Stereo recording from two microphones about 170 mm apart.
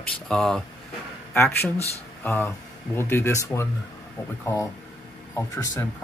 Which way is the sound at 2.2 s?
15° left (ahead or behind).